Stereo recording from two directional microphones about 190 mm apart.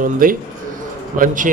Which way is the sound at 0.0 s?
45° right (ahead or behind).